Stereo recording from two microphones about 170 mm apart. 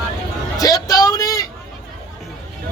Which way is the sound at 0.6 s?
20° left (ahead or behind).